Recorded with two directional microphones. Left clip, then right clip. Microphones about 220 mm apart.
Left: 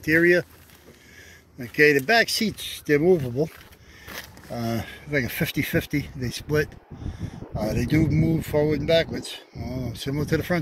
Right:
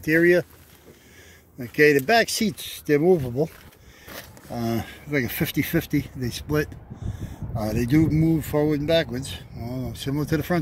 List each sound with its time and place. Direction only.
0.0 s speech: 15° right (ahead or behind)
1.6 s speech: 15° right (ahead or behind)